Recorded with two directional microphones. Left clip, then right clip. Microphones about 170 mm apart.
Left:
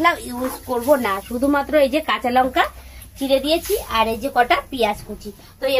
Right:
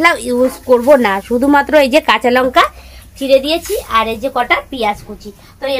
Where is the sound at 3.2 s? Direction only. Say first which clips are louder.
Right 7 dB; 35° right (ahead or behind); by 4.9 s 15° right (ahead or behind).